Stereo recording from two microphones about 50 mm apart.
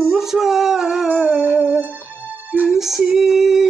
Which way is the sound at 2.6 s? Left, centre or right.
Centre.